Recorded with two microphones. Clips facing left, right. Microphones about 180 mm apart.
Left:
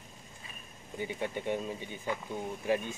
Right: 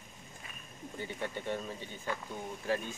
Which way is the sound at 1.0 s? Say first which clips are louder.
Left 4 dB; 15° left (ahead or behind).